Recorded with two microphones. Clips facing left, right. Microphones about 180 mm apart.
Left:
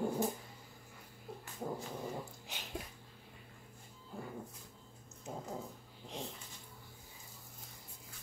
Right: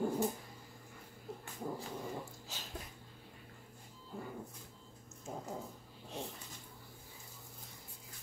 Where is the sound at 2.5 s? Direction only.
20° left (ahead or behind).